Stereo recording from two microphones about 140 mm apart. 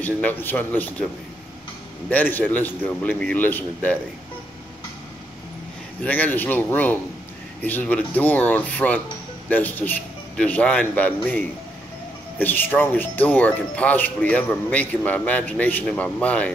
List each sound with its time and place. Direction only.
0.0 s speech: 15° left (ahead or behind)
2.0 s speech: 15° left (ahead or behind)
6.0 s speech: 10° left (ahead or behind)